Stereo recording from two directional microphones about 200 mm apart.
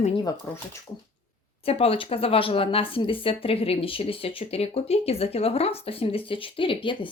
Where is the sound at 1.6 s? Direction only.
30° left (ahead or behind).